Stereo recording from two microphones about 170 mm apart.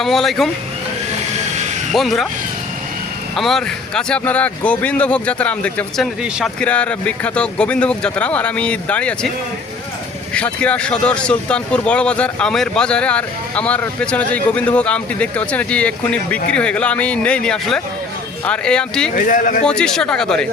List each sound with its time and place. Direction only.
0.0 s speech: centre (ahead or behind)
1.9 s speech: centre (ahead or behind)
3.3 s speech: centre (ahead or behind)
10.3 s speech: 5° left (ahead or behind)
19.1 s speech: 55° left (ahead or behind)
19.6 s speech: 5° left (ahead or behind)